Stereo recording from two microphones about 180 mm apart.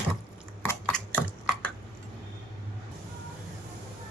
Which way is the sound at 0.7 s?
10° left (ahead or behind).